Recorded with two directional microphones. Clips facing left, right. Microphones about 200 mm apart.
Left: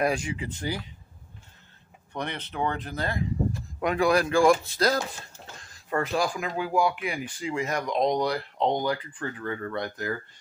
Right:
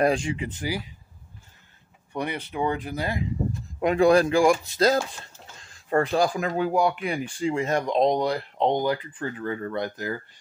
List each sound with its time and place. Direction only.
0.0 s speech: 30° right (ahead or behind)
0.6 s speech: 10° right (ahead or behind)
2.1 s speech: 10° right (ahead or behind)
3.8 s speech: 30° right (ahead or behind)
5.9 s speech: 35° right (ahead or behind)